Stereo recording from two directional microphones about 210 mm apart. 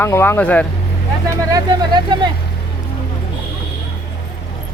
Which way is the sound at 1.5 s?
20° right (ahead or behind).